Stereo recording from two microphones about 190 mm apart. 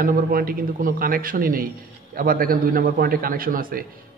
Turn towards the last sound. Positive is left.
turn(degrees=-50)  # may be behind; listen again after turning